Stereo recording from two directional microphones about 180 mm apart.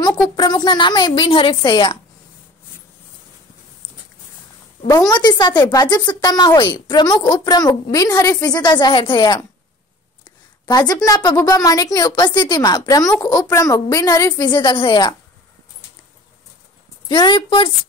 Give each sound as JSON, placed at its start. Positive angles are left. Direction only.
{"t": 0.0, "sound": "a woman's voice", "side_deg": 20}
{"t": 5.1, "sound": "a woman's voice", "side_deg": 20}
{"t": 10.6, "sound": "a woman's voice", "side_deg": 20}
{"t": 17.1, "sound": "a woman's voice", "side_deg": 25}